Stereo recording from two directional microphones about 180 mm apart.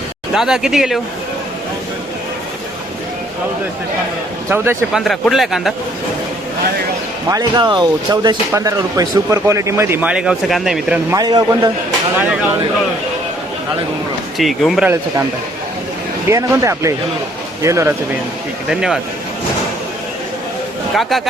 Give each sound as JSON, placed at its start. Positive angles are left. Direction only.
{"t": 0.3, "sound": "a man's voice", "side_deg": -5}
{"t": 4.4, "sound": "speech", "side_deg": -15}
{"t": 4.9, "sound": "a man's voice", "side_deg": 0}
{"t": 7.3, "sound": "speech", "side_deg": -20}
{"t": 11.1, "sound": "a man's voice", "side_deg": -20}
{"t": 12.1, "sound": "speech", "side_deg": -10}
{"t": 14.3, "sound": "a man's voice", "side_deg": 0}
{"t": 16.3, "sound": "speech", "side_deg": -15}
{"t": 18.7, "sound": "a man's voice", "side_deg": -5}
{"t": 20.9, "sound": "a man's voice", "side_deg": 0}